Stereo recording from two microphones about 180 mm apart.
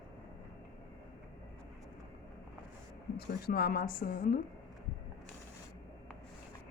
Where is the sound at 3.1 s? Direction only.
55° left (ahead or behind).